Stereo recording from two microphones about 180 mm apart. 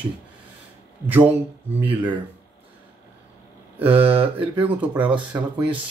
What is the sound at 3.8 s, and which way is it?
Speech, 10° right (ahead or behind).